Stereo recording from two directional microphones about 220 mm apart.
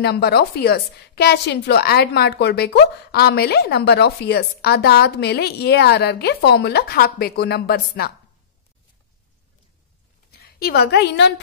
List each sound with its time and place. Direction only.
0.0 s a woman's voice: 45° left (ahead or behind)
10.3 s a woman's voice: 45° left (ahead or behind)